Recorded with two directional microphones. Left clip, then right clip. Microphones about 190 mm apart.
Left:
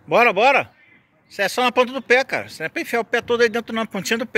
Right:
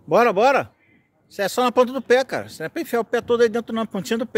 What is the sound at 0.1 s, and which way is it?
Speech, 35° right (ahead or behind).